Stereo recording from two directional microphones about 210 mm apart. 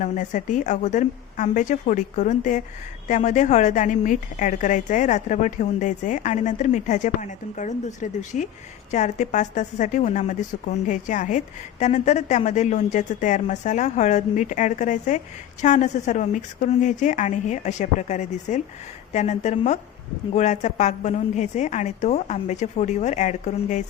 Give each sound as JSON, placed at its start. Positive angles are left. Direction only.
{"t": 0.0, "sound": "a woman's voice", "side_deg": 35}